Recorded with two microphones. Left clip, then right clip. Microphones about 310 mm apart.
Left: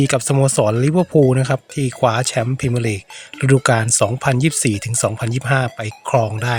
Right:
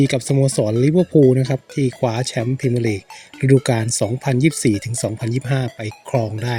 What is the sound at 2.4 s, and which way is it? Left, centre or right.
Speech, left.